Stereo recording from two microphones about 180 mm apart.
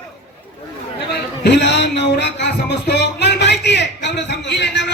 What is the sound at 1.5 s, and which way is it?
Music, 75° left (ahead or behind).